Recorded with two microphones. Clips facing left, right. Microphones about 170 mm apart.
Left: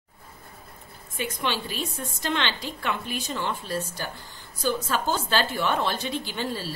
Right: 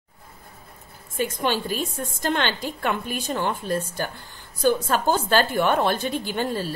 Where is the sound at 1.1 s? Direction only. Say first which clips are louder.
Right 5 dB; 45° right (ahead or behind).